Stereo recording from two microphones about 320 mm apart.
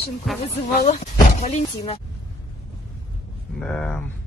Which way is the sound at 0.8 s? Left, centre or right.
Left.